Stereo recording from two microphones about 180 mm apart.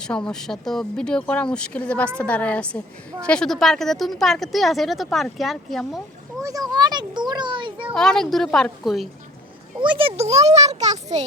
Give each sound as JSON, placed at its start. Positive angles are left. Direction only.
{"t": 0.0, "sound": "a woman's voice", "side_deg": 5}
{"t": 6.4, "sound": "a child's voice", "side_deg": -20}
{"t": 7.9, "sound": "a woman's voice", "side_deg": 5}
{"t": 9.8, "sound": "a child's voice", "side_deg": -30}